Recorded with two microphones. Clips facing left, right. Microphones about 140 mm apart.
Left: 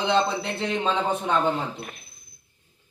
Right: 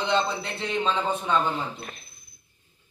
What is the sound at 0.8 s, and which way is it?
Speech, 15° left (ahead or behind).